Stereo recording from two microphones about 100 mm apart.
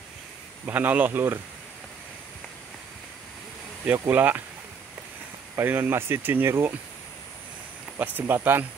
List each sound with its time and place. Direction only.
0.7 s speech: 15° right (ahead or behind)
4.1 s speech: 20° right (ahead or behind)
5.6 s speech: 20° right (ahead or behind)
8.0 s speech: 20° right (ahead or behind)